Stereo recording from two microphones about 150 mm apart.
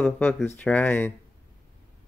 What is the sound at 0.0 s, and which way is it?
Speech, 5° left (ahead or behind).